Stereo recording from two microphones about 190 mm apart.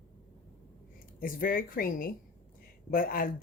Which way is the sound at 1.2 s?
50° left (ahead or behind).